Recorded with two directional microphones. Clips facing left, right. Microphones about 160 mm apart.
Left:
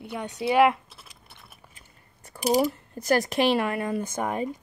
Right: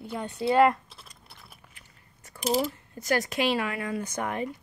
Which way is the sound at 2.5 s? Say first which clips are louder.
Left 5 dB; 40° left (ahead or behind).